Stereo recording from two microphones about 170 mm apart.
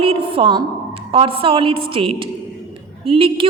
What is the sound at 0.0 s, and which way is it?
A woman's voice, 30° right (ahead or behind).